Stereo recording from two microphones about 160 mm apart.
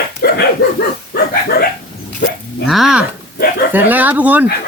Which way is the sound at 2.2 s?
90° left.